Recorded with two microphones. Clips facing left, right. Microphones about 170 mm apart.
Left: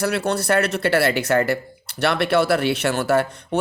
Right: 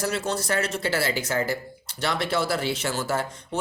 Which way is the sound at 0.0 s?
65° left (ahead or behind).